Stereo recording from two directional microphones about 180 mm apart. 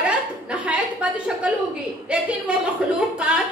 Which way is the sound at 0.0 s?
5° right (ahead or behind).